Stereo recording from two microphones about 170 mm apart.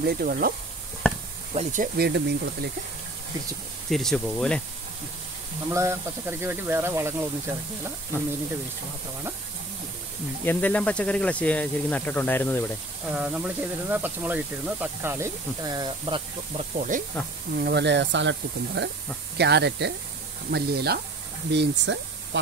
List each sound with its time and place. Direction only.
0.0 s speech: 65° right (ahead or behind)
1.5 s speech: 45° right (ahead or behind)
2.0 s speech: 85° right
3.9 s speech: centre (ahead or behind)
5.7 s speech: 15° right (ahead or behind)
10.4 s speech: 10° left (ahead or behind)
13.1 s speech: 10° right (ahead or behind)
15.6 s speech: 25° right (ahead or behind)
16.5 s speech: 45° right (ahead or behind)
17.6 s speech: 85° right
18.8 s speech: 75° right (ahead or behind)
20.5 s speech: 70° right (ahead or behind)
21.5 s speech: 90° right